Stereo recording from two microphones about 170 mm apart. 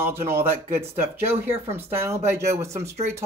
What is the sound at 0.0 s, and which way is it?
Speech, 15° right (ahead or behind).